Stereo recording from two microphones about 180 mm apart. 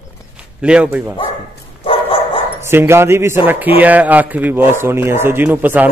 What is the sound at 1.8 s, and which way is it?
Dog, 30° left (ahead or behind).